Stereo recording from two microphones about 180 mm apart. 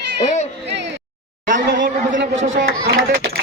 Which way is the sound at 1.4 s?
50° right (ahead or behind).